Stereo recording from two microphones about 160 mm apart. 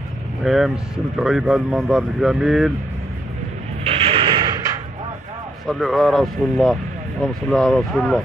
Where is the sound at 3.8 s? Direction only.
35° right (ahead or behind).